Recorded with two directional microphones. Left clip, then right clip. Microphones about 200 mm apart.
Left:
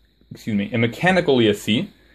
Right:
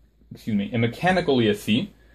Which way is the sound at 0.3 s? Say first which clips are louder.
Left 3 dB; 40° left (ahead or behind).